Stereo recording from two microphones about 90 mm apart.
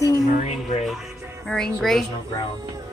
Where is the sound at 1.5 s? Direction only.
5° left (ahead or behind).